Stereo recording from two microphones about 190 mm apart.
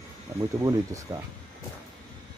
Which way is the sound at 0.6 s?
20° right (ahead or behind).